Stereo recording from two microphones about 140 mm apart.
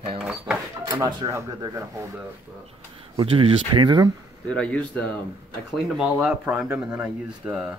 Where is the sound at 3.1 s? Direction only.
40° right (ahead or behind).